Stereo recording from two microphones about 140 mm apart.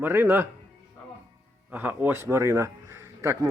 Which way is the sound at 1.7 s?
15° right (ahead or behind).